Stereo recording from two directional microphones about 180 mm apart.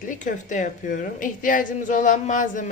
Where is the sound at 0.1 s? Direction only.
45° left (ahead or behind).